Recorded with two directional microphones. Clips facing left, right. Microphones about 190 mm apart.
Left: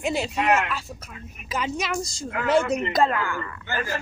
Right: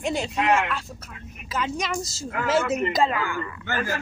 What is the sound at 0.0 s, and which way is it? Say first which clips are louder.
A woman's voice: even; 5° left (ahead or behind).